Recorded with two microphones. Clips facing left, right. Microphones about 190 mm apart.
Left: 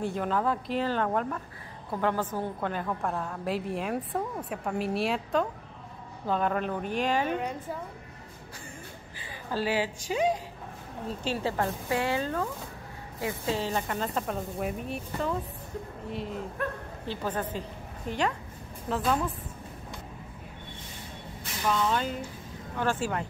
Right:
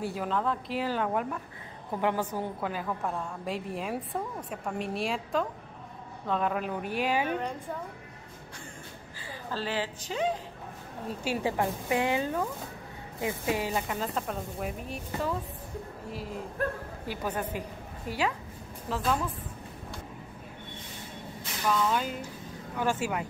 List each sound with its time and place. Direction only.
0.0 s a woman's voice: 5° right (ahead or behind)
0.7 s a woman's voice: 10° right (ahead or behind)
9.2 s a woman's voice: 10° left (ahead or behind)
11.2 s a woman's voice: 15° right (ahead or behind); by 19.2 s 5° left (ahead or behind)
21.6 s a woman's voice: centre (ahead or behind)